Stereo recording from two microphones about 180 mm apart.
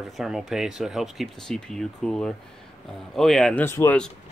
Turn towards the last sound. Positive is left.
turn(degrees=10)  # may be behind; listen again after turning